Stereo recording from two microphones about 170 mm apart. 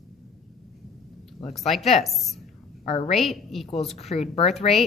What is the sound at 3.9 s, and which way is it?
Speech, 40° left (ahead or behind).